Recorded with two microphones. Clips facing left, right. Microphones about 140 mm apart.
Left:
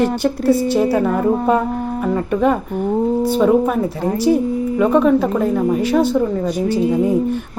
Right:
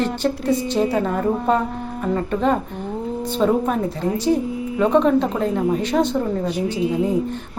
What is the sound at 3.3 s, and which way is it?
Speech, 10° left (ahead or behind).